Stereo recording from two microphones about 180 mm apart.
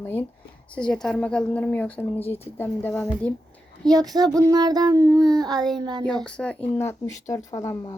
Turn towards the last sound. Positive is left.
turn(degrees=20)  # may be behind; listen again after turning